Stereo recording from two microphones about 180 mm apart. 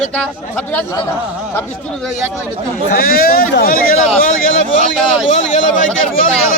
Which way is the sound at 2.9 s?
55° left (ahead or behind).